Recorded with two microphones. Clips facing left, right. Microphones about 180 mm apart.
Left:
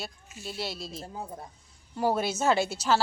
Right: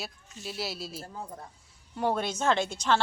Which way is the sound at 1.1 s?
15° left (ahead or behind).